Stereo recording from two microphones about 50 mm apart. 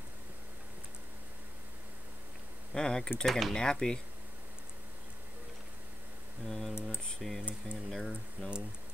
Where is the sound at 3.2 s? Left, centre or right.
Centre.